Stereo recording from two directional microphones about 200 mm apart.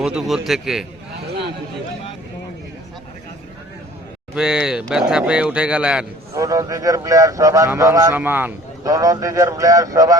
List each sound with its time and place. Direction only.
0.0 s speech: 5° right (ahead or behind)
4.4 s speech: 5° right (ahead or behind)
6.3 s a man's voice: 15° right (ahead or behind)